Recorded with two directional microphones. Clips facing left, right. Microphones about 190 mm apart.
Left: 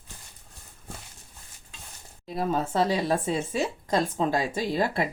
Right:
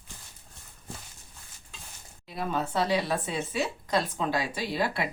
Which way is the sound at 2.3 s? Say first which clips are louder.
Left 4 dB; 40° left (ahead or behind).